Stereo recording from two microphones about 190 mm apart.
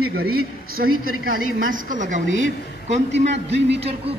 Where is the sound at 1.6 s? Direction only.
45° right (ahead or behind).